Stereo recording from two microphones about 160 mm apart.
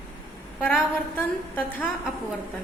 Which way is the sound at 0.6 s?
10° left (ahead or behind).